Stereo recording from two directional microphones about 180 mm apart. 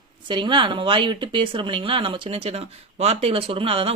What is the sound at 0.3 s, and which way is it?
Speech, 25° right (ahead or behind).